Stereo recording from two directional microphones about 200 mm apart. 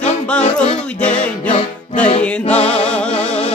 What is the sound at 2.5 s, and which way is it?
Music, 30° left (ahead or behind).